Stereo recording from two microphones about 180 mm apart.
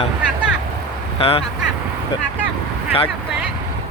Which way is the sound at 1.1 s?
30° left (ahead or behind).